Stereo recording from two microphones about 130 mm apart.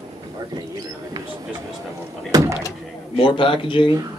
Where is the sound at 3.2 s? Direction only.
40° left (ahead or behind).